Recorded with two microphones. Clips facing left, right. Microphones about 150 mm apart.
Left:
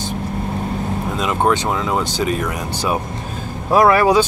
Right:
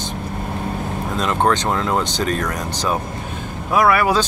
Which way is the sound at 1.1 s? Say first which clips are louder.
Even; 5° left (ahead or behind).